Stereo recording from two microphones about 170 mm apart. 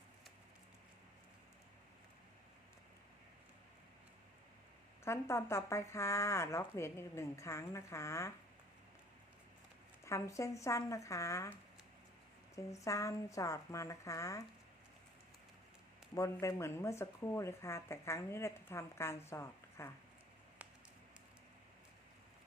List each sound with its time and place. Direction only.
5.0 s speech: 15° left (ahead or behind)
10.1 s speech: 20° left (ahead or behind)
12.5 s speech: 20° left (ahead or behind)
16.1 s speech: 15° left (ahead or behind)